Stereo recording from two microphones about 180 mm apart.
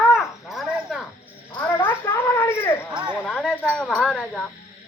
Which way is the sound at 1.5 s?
10° left (ahead or behind).